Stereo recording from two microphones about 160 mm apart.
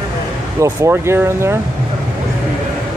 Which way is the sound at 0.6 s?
15° right (ahead or behind).